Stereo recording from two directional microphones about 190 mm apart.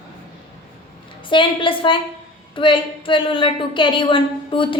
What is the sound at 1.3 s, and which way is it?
A woman's voice, 25° left (ahead or behind).